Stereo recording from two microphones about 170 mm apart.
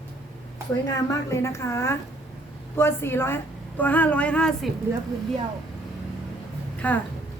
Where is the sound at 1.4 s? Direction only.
15° left (ahead or behind).